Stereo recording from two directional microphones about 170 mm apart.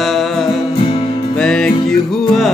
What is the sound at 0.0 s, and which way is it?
Music, centre (ahead or behind).